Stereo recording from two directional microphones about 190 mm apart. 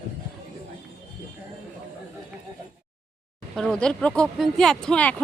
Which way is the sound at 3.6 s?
5° left (ahead or behind).